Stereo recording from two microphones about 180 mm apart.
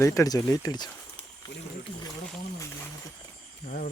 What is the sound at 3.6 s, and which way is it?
Speech, 50° left (ahead or behind).